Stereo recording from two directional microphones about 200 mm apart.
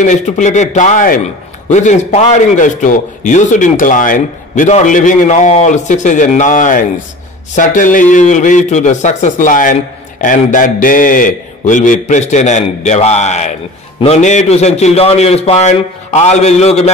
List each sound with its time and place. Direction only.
0.0 s a man's voice: 35° left (ahead or behind)